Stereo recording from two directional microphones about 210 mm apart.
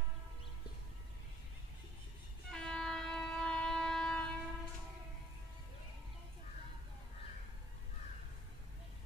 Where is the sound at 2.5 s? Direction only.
5° left (ahead or behind).